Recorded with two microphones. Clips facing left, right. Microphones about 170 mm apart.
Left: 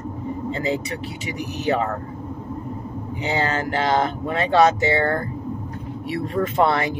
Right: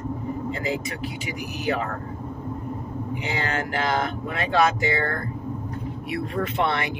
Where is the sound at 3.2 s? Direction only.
35° left (ahead or behind).